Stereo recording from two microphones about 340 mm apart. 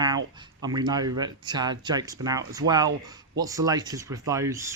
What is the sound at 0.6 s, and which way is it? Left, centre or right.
Speech, centre.